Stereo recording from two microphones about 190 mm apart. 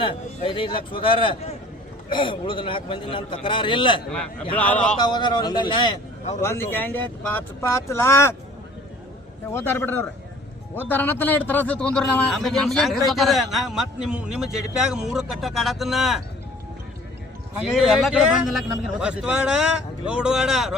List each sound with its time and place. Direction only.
0.0 s a man's voice: 25° left (ahead or behind)
4.1 s a man's voice: 5° left (ahead or behind)
4.9 s a man's voice: 20° left (ahead or behind)
6.4 s speech: 15° left (ahead or behind)
9.5 s a man's voice: 15° left (ahead or behind)
17.6 s a man's voice: 5° right (ahead or behind)